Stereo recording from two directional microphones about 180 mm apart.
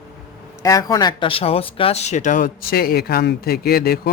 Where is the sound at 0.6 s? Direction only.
20° left (ahead or behind).